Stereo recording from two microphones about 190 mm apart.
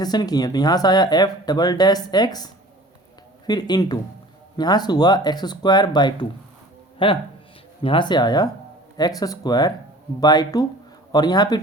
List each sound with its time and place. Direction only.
0.0 s speech: 20° left (ahead or behind)